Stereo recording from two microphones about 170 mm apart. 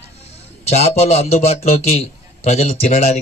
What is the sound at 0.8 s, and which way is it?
A man's voice, 40° left (ahead or behind).